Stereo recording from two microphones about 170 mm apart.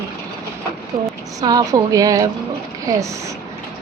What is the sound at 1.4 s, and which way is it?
Speech, 20° right (ahead or behind).